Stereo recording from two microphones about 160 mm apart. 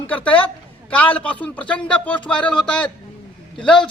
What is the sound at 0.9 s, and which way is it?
A man's voice, 10° left (ahead or behind).